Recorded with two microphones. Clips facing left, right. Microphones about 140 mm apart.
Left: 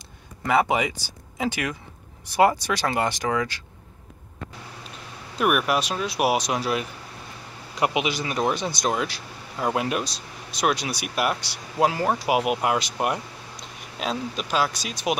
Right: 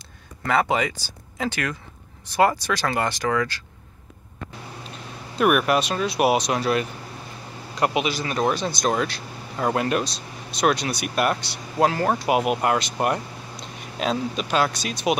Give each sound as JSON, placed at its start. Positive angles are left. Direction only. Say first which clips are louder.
{"t": 0.4, "sound": "speech", "louder": "even", "side_deg": 15}
{"t": 5.4, "sound": "speech", "louder": "right 3 dB", "side_deg": 5}